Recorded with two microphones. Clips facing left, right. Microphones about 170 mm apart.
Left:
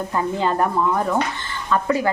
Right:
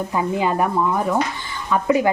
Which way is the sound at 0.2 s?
10° right (ahead or behind).